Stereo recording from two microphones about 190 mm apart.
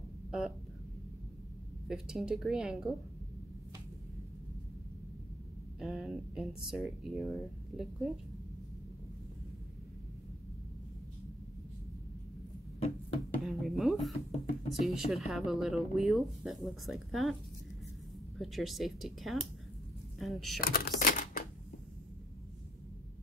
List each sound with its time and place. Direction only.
1.9 s speech: 5° right (ahead or behind)
5.8 s speech: centre (ahead or behind)
13.4 s a sound: centre (ahead or behind)
14.7 s speech: centre (ahead or behind)
18.4 s speech: centre (ahead or behind)
20.6 s typewriter: 50° left (ahead or behind)